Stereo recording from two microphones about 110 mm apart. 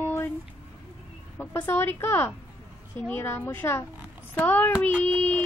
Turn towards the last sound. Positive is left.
turn(degrees=15)  # may be behind; listen again after turning